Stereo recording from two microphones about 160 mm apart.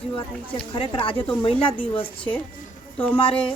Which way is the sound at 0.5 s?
35° left (ahead or behind).